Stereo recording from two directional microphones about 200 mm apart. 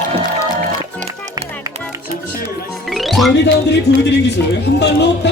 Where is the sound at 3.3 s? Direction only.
60° left (ahead or behind).